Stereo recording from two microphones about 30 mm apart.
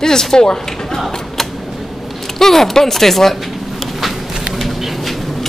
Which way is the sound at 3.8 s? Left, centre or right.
Centre.